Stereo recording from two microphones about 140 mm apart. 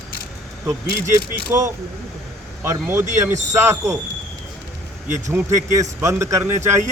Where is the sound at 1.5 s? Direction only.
20° right (ahead or behind).